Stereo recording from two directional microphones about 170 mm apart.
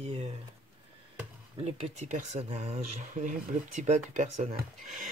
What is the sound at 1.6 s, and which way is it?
Speech, 45° right (ahead or behind).